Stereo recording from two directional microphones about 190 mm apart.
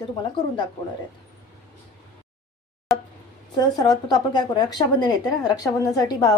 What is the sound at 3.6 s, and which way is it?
Speech, 20° left (ahead or behind).